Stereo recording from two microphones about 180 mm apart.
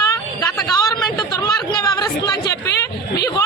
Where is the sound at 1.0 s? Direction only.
20° left (ahead or behind).